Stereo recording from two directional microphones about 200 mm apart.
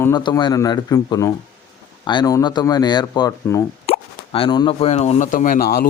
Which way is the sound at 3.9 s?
25° left (ahead or behind).